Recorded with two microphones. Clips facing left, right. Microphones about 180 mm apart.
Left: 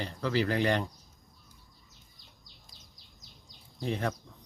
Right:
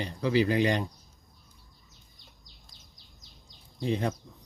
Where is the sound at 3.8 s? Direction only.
15° right (ahead or behind).